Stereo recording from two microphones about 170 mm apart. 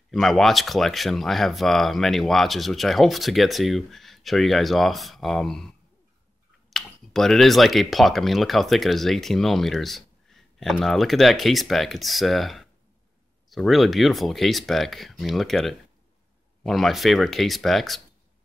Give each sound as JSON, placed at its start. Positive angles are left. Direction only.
{"t": 0.1, "sound": "speech", "side_deg": 0}
{"t": 6.7, "sound": "speech", "side_deg": 0}